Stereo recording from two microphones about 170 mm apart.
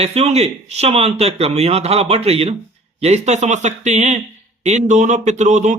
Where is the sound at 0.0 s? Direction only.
40° right (ahead or behind).